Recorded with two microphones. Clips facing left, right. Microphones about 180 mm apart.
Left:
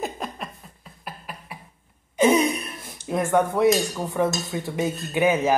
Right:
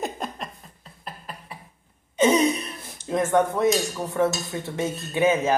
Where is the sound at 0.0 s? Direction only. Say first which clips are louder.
Even; centre (ahead or behind).